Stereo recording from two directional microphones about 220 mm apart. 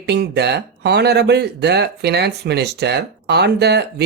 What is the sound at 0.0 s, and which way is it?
Speech, 50° right (ahead or behind).